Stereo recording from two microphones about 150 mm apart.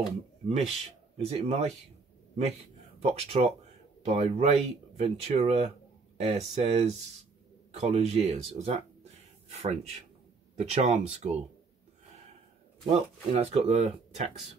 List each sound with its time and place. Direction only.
0.5 s speech: 45° right (ahead or behind)
3.0 s speech: 45° right (ahead or behind)
12.9 s speech: 35° right (ahead or behind)
13.5 s speech: 45° right (ahead or behind)